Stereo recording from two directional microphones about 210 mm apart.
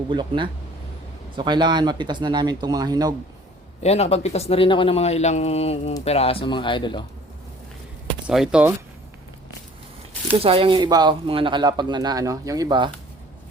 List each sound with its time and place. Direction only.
0.1 s speech: 25° right (ahead or behind)
3.8 s speech: 30° left (ahead or behind)
8.3 s speech: 5° right (ahead or behind)
10.4 s speech: 25° right (ahead or behind)